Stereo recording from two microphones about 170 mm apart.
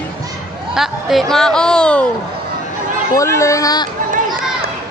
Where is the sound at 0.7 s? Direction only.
Centre (ahead or behind).